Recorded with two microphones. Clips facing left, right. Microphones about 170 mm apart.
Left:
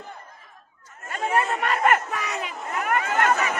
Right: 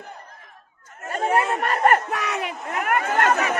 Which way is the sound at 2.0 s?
65° right (ahead or behind).